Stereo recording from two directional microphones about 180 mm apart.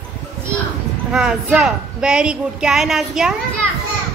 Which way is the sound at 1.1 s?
5° right (ahead or behind).